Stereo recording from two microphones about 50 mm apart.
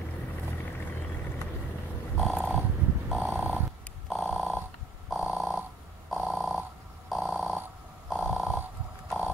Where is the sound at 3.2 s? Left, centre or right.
Right.